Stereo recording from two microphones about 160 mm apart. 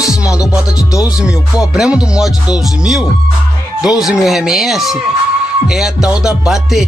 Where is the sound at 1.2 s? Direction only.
5° right (ahead or behind).